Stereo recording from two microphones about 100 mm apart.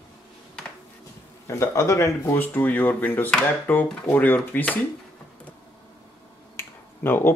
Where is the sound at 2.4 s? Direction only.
15° left (ahead or behind).